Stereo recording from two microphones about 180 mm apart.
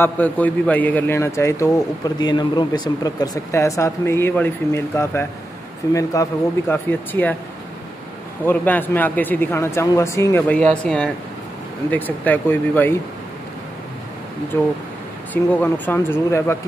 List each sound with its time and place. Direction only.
0.0 s a man's voice: 10° left (ahead or behind)
8.5 s a man's voice: 10° left (ahead or behind)
15.3 s a man's voice: 10° left (ahead or behind)